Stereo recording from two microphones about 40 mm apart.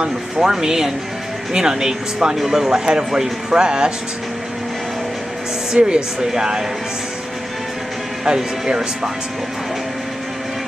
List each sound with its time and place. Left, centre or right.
0.0 s speech: centre
5.7 s speech: right
8.4 s speech: centre